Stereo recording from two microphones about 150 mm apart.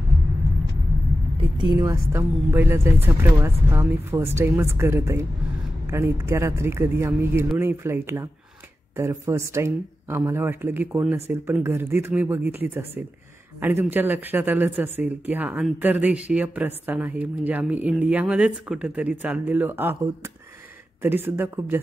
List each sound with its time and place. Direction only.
1.6 s speech: 25° right (ahead or behind)
21.0 s speech: 15° right (ahead or behind)